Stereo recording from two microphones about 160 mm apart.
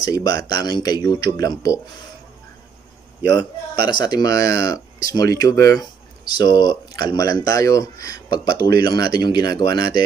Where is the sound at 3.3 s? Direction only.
25° left (ahead or behind).